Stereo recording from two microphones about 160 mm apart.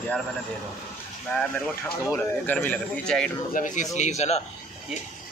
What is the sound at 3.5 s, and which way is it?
Speech, 55° left (ahead or behind).